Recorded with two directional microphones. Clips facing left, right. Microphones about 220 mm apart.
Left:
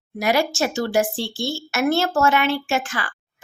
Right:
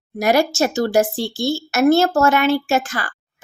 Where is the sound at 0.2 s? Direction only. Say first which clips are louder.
Right 4 dB; 45° right (ahead or behind).